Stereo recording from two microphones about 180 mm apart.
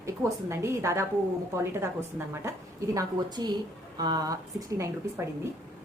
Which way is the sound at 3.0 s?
20° right (ahead or behind).